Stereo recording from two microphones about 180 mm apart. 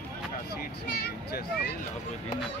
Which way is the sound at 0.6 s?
60° left (ahead or behind).